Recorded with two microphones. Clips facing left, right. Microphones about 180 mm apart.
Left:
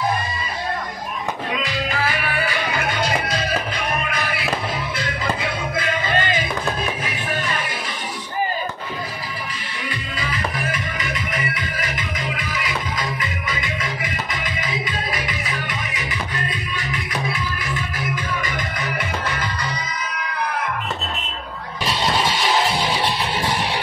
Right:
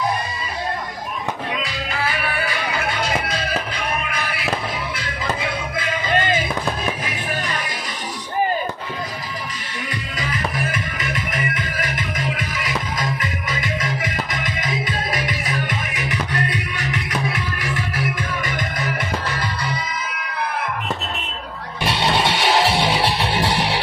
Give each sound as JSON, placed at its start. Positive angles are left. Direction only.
{"t": 16.4, "sound": "music", "side_deg": -70}
{"t": 21.8, "sound": "music", "side_deg": -65}